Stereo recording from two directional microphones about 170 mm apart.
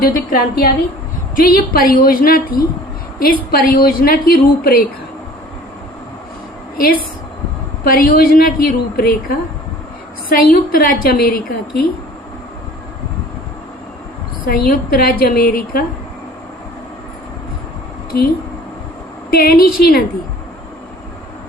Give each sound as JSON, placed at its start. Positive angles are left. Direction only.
{"t": 0.0, "sound": "a woman's voice", "side_deg": 60}
{"t": 7.9, "sound": "a woman's voice", "side_deg": 60}
{"t": 14.4, "sound": "a woman's voice", "side_deg": 55}
{"t": 18.1, "sound": "a woman's voice", "side_deg": 60}
{"t": 19.3, "sound": "a woman's voice", "side_deg": 60}